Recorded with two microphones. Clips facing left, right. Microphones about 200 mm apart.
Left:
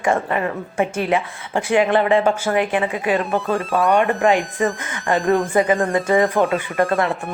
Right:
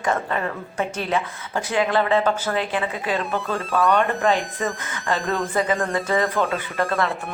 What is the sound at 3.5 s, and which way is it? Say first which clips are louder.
Speech: left 1 dB; centre (ahead or behind).